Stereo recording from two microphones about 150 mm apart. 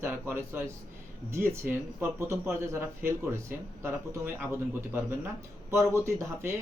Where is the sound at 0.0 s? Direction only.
15° right (ahead or behind).